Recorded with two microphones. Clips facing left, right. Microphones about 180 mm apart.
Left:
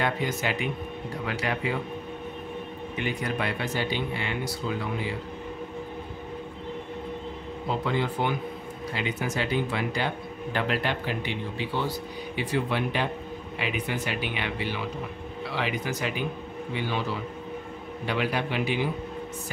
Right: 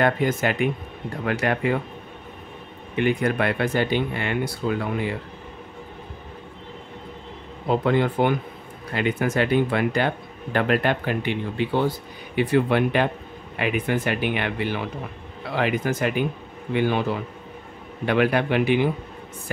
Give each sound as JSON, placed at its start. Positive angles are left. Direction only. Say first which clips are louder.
{"t": 0.0, "sound": "speech", "louder": "right 7 dB", "side_deg": -50}
{"t": 3.0, "sound": "speech", "louder": "right 8 dB", "side_deg": -55}
{"t": 7.7, "sound": "speech", "louder": "right 8 dB", "side_deg": -55}